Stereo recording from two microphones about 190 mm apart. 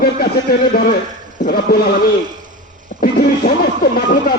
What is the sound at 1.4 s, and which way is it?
Speech, 50° left (ahead or behind).